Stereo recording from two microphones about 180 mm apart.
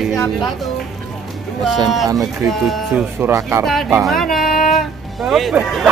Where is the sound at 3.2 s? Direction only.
15° right (ahead or behind).